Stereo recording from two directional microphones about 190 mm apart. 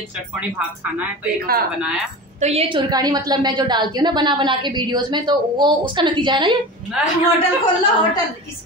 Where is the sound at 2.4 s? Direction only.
35° right (ahead or behind).